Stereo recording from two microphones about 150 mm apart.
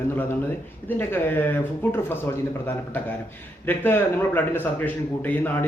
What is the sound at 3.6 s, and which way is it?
A man's voice, 15° left (ahead or behind).